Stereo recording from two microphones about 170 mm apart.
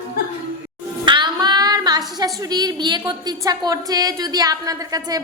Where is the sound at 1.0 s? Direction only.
25° right (ahead or behind).